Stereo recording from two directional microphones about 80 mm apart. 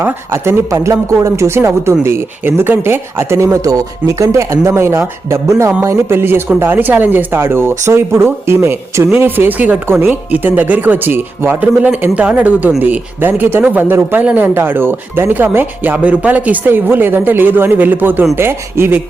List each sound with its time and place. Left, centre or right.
0.0 s speech: right